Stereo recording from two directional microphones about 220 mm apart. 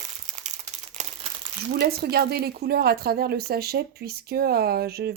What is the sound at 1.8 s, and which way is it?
A woman's voice, 45° right (ahead or behind).